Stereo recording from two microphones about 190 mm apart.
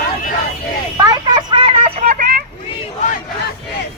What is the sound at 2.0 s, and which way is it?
Vehicle, 45° right (ahead or behind).